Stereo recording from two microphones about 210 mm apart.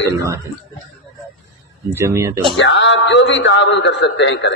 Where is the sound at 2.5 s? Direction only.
60° left (ahead or behind).